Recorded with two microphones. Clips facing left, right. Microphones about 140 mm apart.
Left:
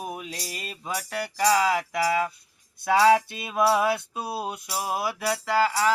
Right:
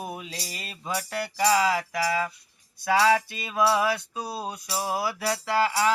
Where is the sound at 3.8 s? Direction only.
25° left (ahead or behind).